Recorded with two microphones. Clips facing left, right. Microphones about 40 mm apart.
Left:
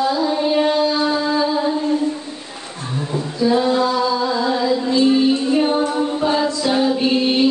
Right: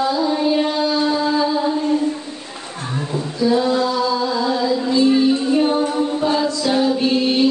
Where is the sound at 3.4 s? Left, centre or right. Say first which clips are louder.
Left 1 dB; centre.